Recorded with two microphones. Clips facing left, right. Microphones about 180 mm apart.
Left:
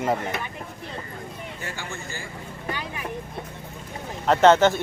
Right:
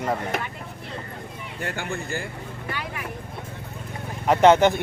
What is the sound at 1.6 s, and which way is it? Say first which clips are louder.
Speech: right 8 dB; 60° right (ahead or behind).